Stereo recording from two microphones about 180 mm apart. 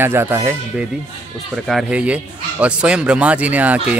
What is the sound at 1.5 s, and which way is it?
Speech, centre (ahead or behind).